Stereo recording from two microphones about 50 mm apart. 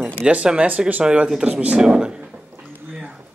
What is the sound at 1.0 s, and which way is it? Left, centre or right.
Speech, centre.